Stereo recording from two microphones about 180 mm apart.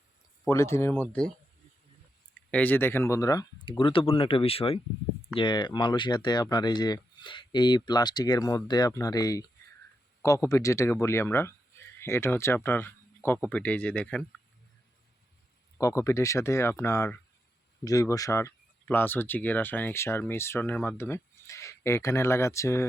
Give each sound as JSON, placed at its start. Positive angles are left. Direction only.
{"t": 0.4, "sound": "speech", "side_deg": 15}
{"t": 2.5, "sound": "speech", "side_deg": 10}
{"t": 15.8, "sound": "speech", "side_deg": 15}